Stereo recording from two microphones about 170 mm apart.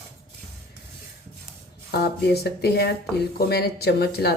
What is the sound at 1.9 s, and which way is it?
Speech, 70° left (ahead or behind).